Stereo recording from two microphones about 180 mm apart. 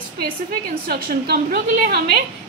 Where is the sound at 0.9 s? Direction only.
60° right (ahead or behind).